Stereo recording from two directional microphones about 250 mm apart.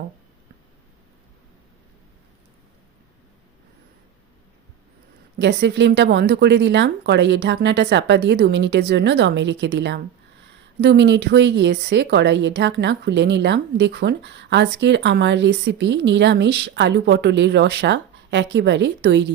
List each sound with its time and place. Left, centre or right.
5.4 s speech: right